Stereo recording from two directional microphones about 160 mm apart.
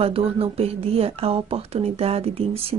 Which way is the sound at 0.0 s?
35° right (ahead or behind).